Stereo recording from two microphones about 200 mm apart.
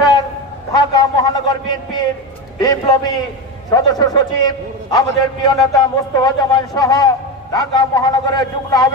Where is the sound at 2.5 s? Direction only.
20° left (ahead or behind).